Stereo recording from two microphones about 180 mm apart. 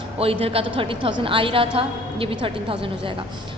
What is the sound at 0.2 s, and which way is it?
A woman's voice, 30° right (ahead or behind).